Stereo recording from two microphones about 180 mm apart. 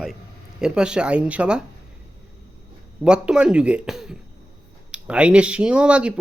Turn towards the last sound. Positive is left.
turn(degrees=-5)  # may be behind; listen again after turning